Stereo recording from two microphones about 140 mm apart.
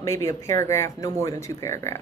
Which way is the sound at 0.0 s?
20° left (ahead or behind).